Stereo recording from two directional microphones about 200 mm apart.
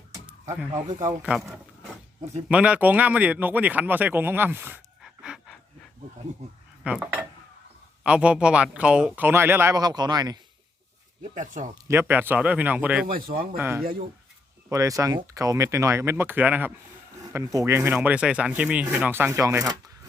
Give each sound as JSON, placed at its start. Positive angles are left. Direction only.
{"t": 0.5, "sound": "speech", "side_deg": -15}
{"t": 2.5, "sound": "speech", "side_deg": -5}
{"t": 6.8, "sound": "speech", "side_deg": -5}
{"t": 11.3, "sound": "speech", "side_deg": -40}
{"t": 11.7, "sound": "speech", "side_deg": -10}
{"t": 13.1, "sound": "speech", "side_deg": -45}
{"t": 13.6, "sound": "speech", "side_deg": -10}